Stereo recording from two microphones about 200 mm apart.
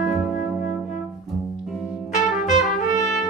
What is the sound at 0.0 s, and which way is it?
Music, 5° right (ahead or behind).